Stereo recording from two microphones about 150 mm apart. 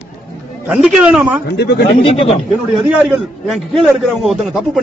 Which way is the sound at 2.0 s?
40° left (ahead or behind).